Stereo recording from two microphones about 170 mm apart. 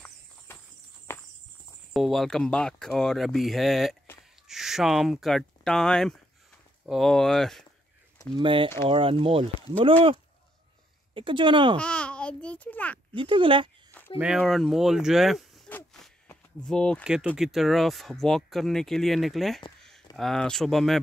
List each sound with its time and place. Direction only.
1.1 s walk: 15° left (ahead or behind)
2.0 s speech: centre (ahead or behind)
8.4 s speech: 30° right (ahead or behind)
11.1 s speech: 30° right (ahead or behind)
11.7 s a child's voice: 5° left (ahead or behind)
13.1 s speech: 30° right (ahead or behind)
14.1 s speech: 5° right (ahead or behind)
15.7 s a sound: 5° left (ahead or behind)
17.4 s speech: centre (ahead or behind)